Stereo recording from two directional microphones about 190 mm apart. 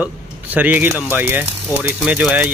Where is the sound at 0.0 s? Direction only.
10° right (ahead or behind).